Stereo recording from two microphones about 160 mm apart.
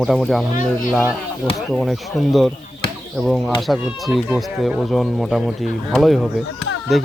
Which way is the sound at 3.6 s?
Centre (ahead or behind).